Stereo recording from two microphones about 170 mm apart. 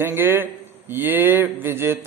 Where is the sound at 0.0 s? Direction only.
15° right (ahead or behind).